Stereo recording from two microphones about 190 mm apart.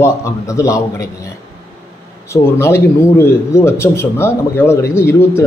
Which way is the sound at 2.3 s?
15° left (ahead or behind).